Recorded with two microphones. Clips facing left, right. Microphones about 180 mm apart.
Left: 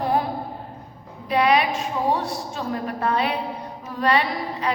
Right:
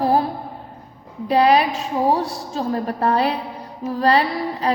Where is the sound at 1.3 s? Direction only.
35° right (ahead or behind).